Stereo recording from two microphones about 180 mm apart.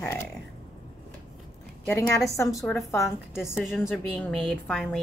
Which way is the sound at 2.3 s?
20° left (ahead or behind).